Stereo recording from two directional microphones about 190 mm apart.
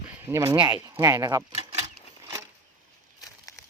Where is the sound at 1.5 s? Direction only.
35° right (ahead or behind).